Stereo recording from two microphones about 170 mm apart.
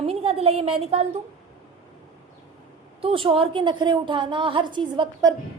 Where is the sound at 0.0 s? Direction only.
35° right (ahead or behind).